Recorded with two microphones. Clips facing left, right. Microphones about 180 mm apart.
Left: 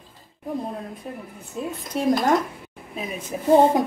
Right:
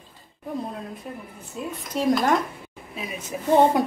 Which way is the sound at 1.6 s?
40° left (ahead or behind).